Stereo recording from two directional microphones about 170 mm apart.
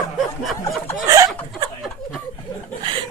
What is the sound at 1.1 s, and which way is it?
Chuckle, 20° right (ahead or behind).